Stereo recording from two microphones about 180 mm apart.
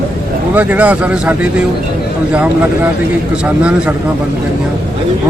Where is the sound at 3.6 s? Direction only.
5° right (ahead or behind).